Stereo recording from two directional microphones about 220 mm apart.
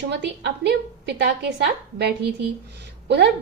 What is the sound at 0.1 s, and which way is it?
A woman's voice, 50° right (ahead or behind).